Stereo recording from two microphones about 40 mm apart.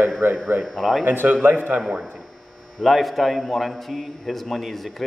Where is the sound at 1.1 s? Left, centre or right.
Right.